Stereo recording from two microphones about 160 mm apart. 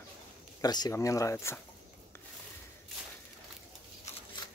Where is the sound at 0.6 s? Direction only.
25° left (ahead or behind).